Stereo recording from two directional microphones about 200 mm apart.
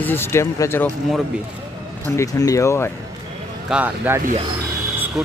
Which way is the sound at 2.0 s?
15° left (ahead or behind).